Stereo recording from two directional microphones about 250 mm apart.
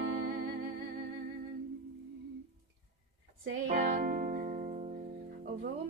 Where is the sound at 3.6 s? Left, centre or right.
Right.